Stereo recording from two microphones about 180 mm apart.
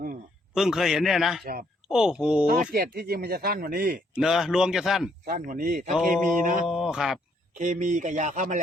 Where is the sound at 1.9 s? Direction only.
5° right (ahead or behind).